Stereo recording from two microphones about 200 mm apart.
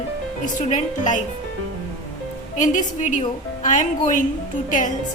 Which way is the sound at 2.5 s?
40° left (ahead or behind).